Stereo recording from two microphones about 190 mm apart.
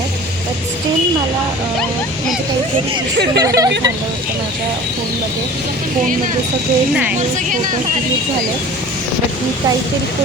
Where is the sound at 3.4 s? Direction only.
20° right (ahead or behind).